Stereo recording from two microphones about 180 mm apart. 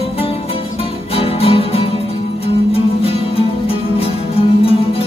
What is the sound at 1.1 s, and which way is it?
Music, 30° left (ahead or behind).